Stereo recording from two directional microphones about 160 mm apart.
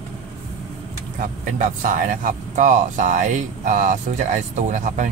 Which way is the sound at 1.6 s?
50° right (ahead or behind).